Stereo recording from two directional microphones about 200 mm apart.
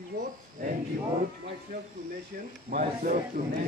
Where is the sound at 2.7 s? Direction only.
45° right (ahead or behind).